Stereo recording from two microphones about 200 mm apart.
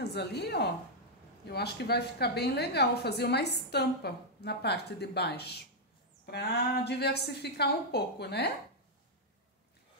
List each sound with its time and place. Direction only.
0.0 s a woman's voice: 55° left (ahead or behind)